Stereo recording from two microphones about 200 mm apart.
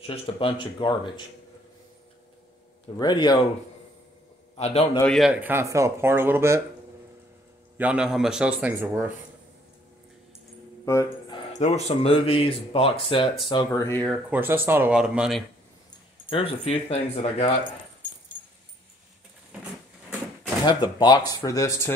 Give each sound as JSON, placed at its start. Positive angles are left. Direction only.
{"t": 0.0, "sound": "speech", "side_deg": 25}
{"t": 3.0, "sound": "speech", "side_deg": 20}
{"t": 4.6, "sound": "a man's voice", "side_deg": 30}
{"t": 5.0, "sound": "speech", "side_deg": 0}
{"t": 7.7, "sound": "speech", "side_deg": -5}
{"t": 10.9, "sound": "speech", "side_deg": 15}
{"t": 11.5, "sound": "speech", "side_deg": 35}
{"t": 14.3, "sound": "speech", "side_deg": -10}
{"t": 16.3, "sound": "speech", "side_deg": 30}
{"t": 20.6, "sound": "speech", "side_deg": 20}